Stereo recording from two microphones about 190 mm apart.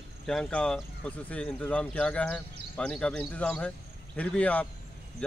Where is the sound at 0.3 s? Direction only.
5° left (ahead or behind).